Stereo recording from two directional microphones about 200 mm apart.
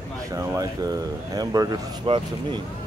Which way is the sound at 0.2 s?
15° right (ahead or behind).